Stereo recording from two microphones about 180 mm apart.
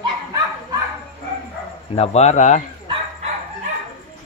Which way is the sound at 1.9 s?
35° left (ahead or behind).